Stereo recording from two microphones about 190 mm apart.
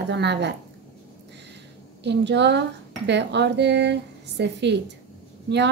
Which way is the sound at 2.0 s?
65° right (ahead or behind).